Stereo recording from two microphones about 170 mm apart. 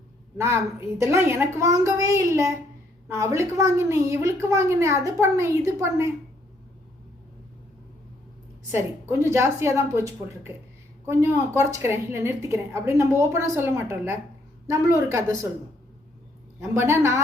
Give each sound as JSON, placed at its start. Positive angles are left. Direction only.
{"t": 0.3, "sound": "a woman's voice", "side_deg": -15}
{"t": 8.7, "sound": "a woman's voice", "side_deg": -15}
{"t": 16.6, "sound": "a woman's voice", "side_deg": -15}